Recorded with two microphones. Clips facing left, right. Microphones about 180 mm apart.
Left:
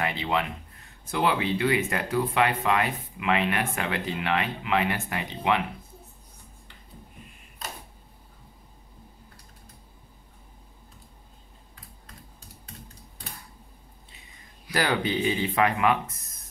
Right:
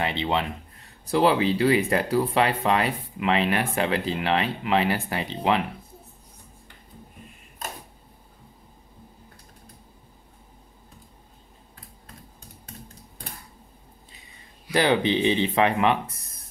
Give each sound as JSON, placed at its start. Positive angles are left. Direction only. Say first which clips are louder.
{"t": 0.0, "sound": "speech", "louder": "right 2 dB", "side_deg": -25}
{"t": 7.6, "sound": "a sound", "louder": "right 3 dB", "side_deg": -50}
{"t": 14.7, "sound": "speech", "louder": "right 5 dB", "side_deg": -25}